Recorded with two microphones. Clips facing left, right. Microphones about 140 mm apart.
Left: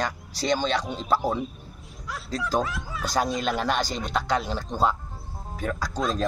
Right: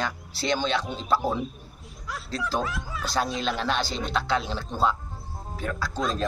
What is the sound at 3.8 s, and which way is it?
Speech, 40° left (ahead or behind).